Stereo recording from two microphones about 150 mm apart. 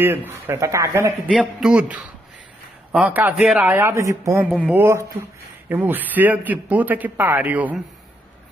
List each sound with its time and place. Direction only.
0.0 s a man's voice: 15° right (ahead or behind)
1.2 s a man's voice: 5° right (ahead or behind)